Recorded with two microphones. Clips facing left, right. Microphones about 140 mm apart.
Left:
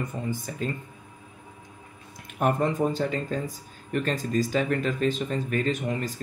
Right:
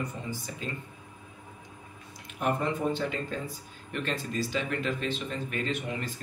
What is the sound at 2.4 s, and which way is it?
Speech, 45° left (ahead or behind).